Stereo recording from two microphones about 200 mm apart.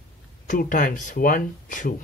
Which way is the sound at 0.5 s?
45° left (ahead or behind).